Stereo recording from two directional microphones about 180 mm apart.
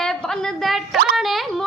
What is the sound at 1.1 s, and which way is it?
Music, centre (ahead or behind).